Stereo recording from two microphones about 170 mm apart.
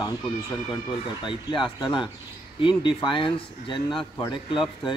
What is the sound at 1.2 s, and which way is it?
Speech, 30° left (ahead or behind).